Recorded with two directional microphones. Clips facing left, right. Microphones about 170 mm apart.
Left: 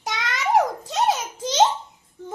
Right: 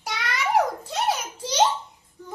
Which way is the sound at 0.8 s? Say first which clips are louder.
Left 3 dB; 20° left (ahead or behind).